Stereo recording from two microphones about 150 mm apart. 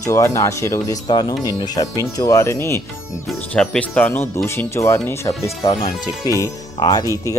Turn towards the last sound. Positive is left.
turn(degrees=25)  # may be behind; listen again after turning